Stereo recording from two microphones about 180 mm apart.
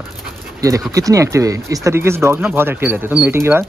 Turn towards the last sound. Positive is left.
turn(degrees=-10)  # may be behind; listen again after turning